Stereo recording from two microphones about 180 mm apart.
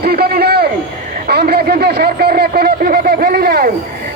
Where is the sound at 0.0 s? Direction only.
60° right (ahead or behind).